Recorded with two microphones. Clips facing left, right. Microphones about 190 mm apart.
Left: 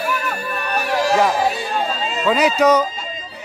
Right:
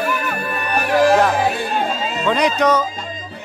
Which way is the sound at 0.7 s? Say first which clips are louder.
Right 5 dB; 55° right (ahead or behind).